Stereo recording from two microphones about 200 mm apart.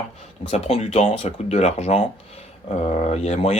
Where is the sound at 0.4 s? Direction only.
30° left (ahead or behind).